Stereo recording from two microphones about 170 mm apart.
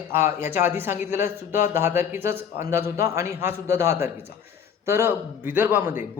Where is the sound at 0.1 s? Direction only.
15° right (ahead or behind).